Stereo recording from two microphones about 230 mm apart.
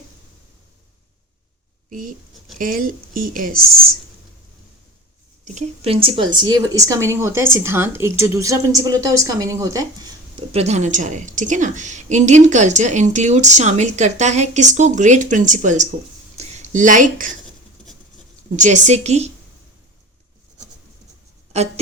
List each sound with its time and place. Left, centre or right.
1.9 s a woman's voice: right
5.5 s a woman's voice: right
10.5 s a woman's voice: right
18.5 s a woman's voice: right
21.5 s a woman's voice: right